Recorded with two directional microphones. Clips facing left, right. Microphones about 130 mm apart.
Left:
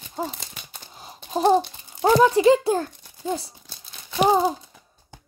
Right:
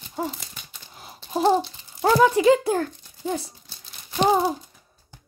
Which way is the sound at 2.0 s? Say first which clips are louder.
Left 1 dB; 15° left (ahead or behind).